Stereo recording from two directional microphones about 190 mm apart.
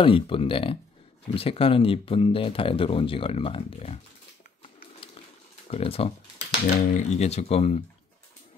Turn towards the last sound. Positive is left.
turn(degrees=35)  # may be behind; listen again after turning